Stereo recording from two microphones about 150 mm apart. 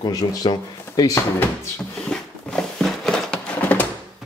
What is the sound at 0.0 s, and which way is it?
Speech, 25° left (ahead or behind).